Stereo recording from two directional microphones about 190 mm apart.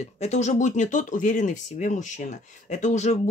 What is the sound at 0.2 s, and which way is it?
Speech, 35° left (ahead or behind).